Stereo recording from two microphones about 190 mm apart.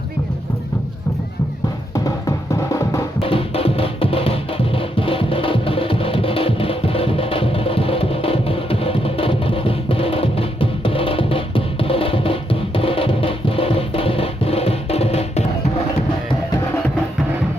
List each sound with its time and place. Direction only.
2.0 s music: 15° left (ahead or behind)
3.2 s music: 30° left (ahead or behind)